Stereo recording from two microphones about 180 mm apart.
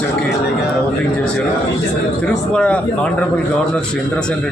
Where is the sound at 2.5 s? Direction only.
5° left (ahead or behind).